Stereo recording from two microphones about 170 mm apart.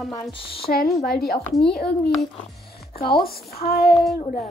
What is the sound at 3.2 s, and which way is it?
Speech, 65° left (ahead or behind).